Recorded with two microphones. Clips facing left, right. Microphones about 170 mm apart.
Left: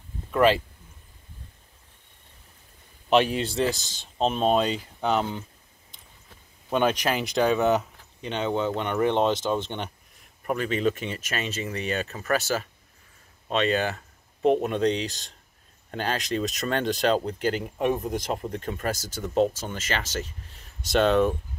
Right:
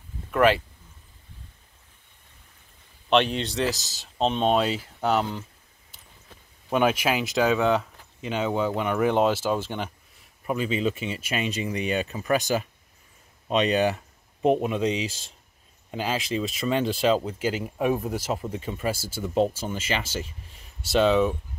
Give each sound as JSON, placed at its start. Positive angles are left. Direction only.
{"t": 0.3, "sound": "speech", "side_deg": 0}
{"t": 3.1, "sound": "speech", "side_deg": 5}
{"t": 6.7, "sound": "speech", "side_deg": -5}
{"t": 14.4, "sound": "speech", "side_deg": -5}